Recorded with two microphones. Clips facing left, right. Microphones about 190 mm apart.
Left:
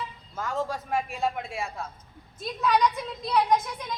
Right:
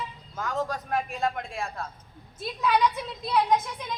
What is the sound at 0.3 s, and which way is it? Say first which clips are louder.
Speech: even; centre (ahead or behind).